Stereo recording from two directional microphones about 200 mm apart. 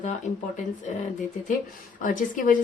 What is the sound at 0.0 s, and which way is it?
Speech, 35° left (ahead or behind).